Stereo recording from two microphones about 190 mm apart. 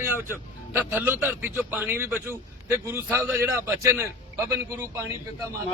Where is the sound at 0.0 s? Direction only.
10° right (ahead or behind).